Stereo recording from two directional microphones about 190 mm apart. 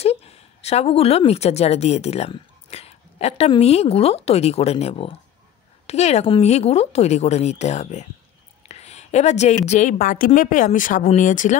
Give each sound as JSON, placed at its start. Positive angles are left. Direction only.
{"t": 0.0, "sound": "a woman's voice", "side_deg": 35}